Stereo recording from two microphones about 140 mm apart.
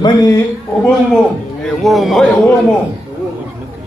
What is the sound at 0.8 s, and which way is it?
A man's voice, 5° left (ahead or behind).